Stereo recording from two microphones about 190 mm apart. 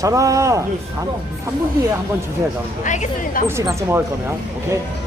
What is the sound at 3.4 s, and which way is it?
Speech, 15° right (ahead or behind).